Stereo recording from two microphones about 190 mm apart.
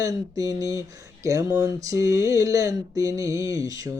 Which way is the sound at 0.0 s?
20° right (ahead or behind).